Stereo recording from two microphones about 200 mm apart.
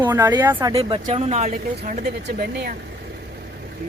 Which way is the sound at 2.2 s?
55° right (ahead or behind).